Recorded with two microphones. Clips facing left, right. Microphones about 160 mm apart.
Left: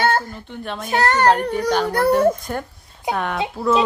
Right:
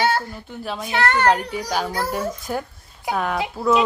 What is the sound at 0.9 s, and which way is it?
Speech, 40° left (ahead or behind).